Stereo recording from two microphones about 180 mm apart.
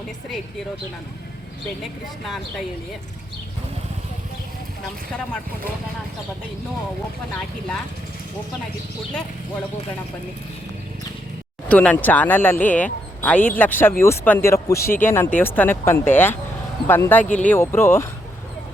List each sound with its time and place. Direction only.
11.7 s speech: 10° left (ahead or behind)
14.8 s speech: 55° left (ahead or behind)
15.0 s speech: 10° left (ahead or behind)